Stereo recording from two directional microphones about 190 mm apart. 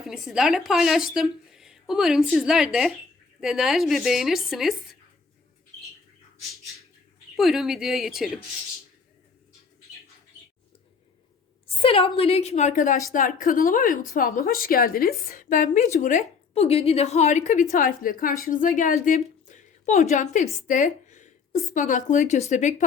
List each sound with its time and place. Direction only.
0.0 s speech: centre (ahead or behind)
7.3 s speech: centre (ahead or behind)
11.8 s a woman's voice: 30° left (ahead or behind)